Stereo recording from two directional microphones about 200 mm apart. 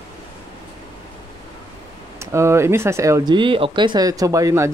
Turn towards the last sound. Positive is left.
turn(degrees=-15)  # may be behind; listen again after turning